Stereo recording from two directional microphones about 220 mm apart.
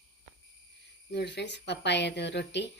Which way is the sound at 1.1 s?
50° left (ahead or behind).